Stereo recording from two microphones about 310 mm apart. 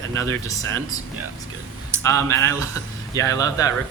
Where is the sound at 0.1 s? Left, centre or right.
Right.